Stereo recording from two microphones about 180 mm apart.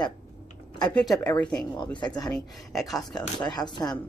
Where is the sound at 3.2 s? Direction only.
20° left (ahead or behind).